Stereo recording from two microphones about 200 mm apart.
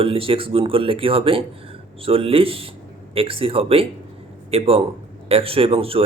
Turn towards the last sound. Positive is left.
turn(degrees=-30)  # may be behind; listen again after turning